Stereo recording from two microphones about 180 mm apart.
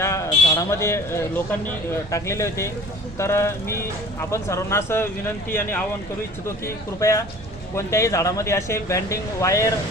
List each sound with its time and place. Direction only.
0.0 s speech: 15° left (ahead or behind)
6.7 s speech: 15° left (ahead or behind)